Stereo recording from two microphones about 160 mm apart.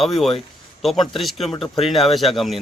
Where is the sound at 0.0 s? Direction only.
Centre (ahead or behind).